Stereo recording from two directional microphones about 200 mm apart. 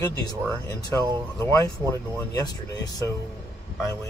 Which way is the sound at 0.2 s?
20° left (ahead or behind).